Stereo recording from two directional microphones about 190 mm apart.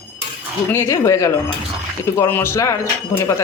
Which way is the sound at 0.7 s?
15° left (ahead or behind).